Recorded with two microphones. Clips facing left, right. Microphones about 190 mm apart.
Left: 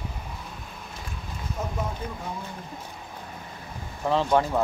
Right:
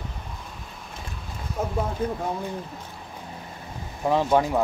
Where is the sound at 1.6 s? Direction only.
55° right (ahead or behind).